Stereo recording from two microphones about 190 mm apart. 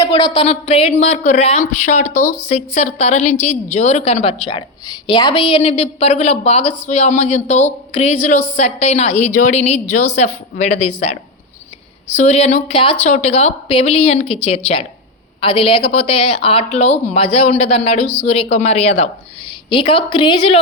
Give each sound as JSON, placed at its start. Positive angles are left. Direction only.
{"t": 0.0, "sound": "a woman's voice", "side_deg": 30}
{"t": 2.2, "sound": "a woman's voice", "side_deg": 15}
{"t": 2.5, "sound": "a woman's voice", "side_deg": 35}